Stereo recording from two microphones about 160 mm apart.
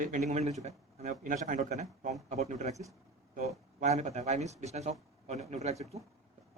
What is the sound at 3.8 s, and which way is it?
Speech, 45° right (ahead or behind).